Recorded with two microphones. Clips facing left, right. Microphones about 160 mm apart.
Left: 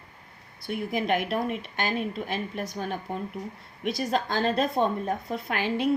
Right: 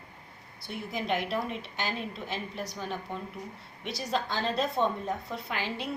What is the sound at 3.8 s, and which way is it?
A woman's voice, 50° left (ahead or behind).